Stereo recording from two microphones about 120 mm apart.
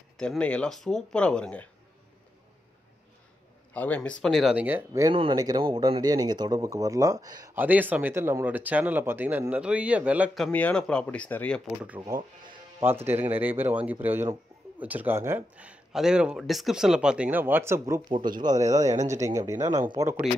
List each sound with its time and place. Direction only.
0.2 s speech: 10° left (ahead or behind)
3.7 s speech: 15° left (ahead or behind)
4.3 s speech: 5° right (ahead or behind)
4.6 s speech: 15° right (ahead or behind)
5.3 s speech: 35° right (ahead or behind)
7.5 s speech: 15° right (ahead or behind)
10.5 s speech: 10° left (ahead or behind)
12.8 s speech: 20° right (ahead or behind)
18.0 s speech: 35° right (ahead or behind)